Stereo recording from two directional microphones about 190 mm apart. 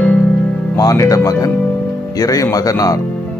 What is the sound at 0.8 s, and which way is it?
Speech, 20° left (ahead or behind).